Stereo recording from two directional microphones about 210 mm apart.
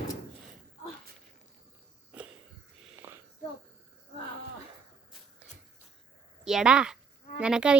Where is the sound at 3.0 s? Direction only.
10° right (ahead or behind).